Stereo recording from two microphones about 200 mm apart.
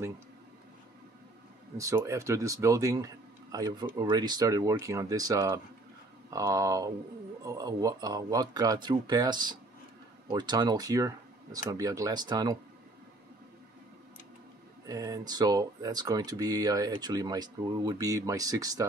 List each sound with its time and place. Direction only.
1.8 s speech: 15° right (ahead or behind)
14.9 s speech: 20° right (ahead or behind)